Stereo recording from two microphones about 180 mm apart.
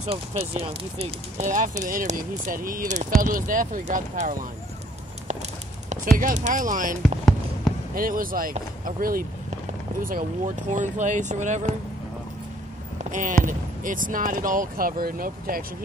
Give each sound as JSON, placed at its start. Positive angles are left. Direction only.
{"t": 0.0, "sound": "speech", "side_deg": -35}
{"t": 5.9, "sound": "speech", "side_deg": -45}
{"t": 13.1, "sound": "speech", "side_deg": -45}